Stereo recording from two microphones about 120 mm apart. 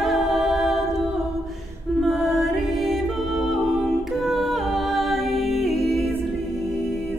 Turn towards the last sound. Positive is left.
turn(degrees=0)  # may be behind; listen again after turning